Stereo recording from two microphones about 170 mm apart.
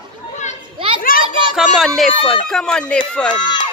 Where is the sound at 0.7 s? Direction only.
30° right (ahead or behind).